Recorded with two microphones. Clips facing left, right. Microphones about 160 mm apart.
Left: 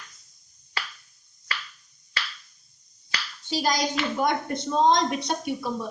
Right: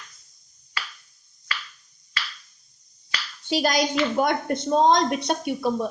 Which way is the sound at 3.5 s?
65° right (ahead or behind).